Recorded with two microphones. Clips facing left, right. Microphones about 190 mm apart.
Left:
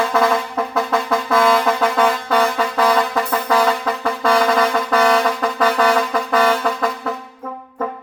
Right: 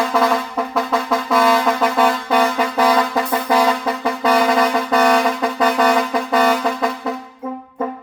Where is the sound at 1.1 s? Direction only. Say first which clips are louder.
Even; 5° right (ahead or behind).